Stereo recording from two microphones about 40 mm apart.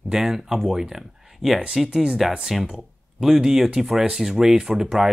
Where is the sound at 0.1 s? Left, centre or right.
Centre.